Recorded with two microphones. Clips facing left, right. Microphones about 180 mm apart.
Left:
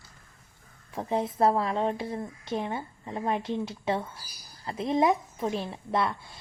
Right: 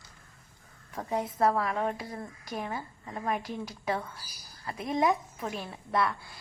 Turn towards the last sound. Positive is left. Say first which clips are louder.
# left 1 dB
turn(degrees=20)  # may be behind; listen again after turning